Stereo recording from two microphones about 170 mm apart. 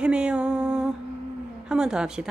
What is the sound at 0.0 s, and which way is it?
Music, 5° right (ahead or behind).